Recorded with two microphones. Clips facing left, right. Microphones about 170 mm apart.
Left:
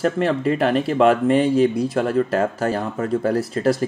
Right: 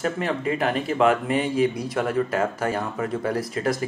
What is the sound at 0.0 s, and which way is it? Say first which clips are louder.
Speech: left 6 dB; 40° left (ahead or behind).